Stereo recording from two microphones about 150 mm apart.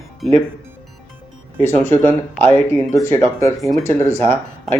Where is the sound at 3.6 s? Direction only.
Centre (ahead or behind).